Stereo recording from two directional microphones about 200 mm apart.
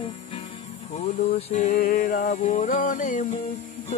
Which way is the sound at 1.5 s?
35° left (ahead or behind).